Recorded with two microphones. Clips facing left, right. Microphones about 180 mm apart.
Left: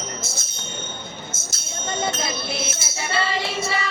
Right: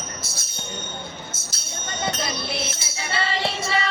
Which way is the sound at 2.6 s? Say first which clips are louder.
Left 2 dB; 50° left (ahead or behind).